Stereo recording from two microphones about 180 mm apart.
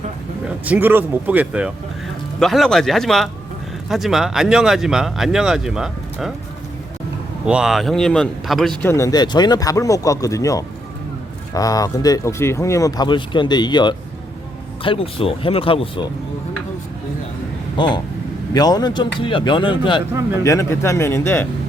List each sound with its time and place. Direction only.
0.4 s speech: 10° right (ahead or behind)
7.4 s speech: 5° right (ahead or behind)
8.9 s speech: 20° left (ahead or behind)
17.7 s speech: 25° left (ahead or behind)
20.4 s speech: 15° left (ahead or behind)